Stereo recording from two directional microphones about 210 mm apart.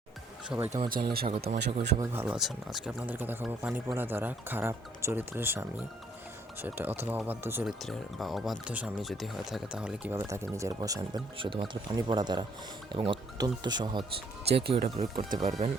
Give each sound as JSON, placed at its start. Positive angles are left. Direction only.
{"t": 0.4, "sound": "speech", "side_deg": -5}
{"t": 0.9, "sound": "speech", "side_deg": -45}
{"t": 2.0, "sound": "speech", "side_deg": -10}